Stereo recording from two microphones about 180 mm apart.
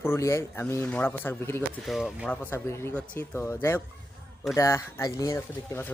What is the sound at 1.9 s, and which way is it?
Speech, 5° right (ahead or behind).